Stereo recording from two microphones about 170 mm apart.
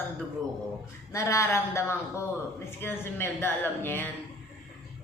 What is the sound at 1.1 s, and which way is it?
A woman's voice, 15° left (ahead or behind).